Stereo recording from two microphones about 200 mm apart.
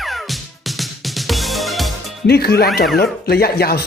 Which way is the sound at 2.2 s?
50° left (ahead or behind).